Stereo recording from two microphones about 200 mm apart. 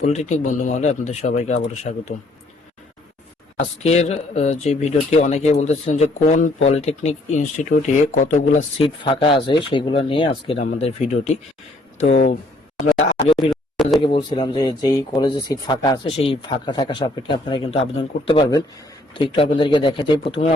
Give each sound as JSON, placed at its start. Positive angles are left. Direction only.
{"t": 0.0, "sound": "speech", "side_deg": 35}
{"t": 3.8, "sound": "speech", "side_deg": 35}
{"t": 8.8, "sound": "speech", "side_deg": 25}
{"t": 12.9, "sound": "speech", "side_deg": 0}
{"t": 14.0, "sound": "speech", "side_deg": 25}